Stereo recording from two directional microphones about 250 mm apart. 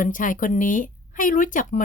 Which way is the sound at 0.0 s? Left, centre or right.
Left.